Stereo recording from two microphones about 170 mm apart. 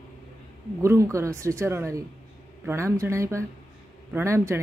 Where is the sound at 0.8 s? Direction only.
15° right (ahead or behind).